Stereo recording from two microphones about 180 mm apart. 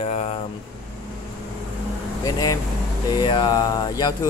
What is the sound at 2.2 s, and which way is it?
Speech, 20° left (ahead or behind).